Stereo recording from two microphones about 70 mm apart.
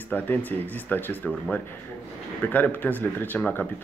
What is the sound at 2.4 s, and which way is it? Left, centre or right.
Speech, left.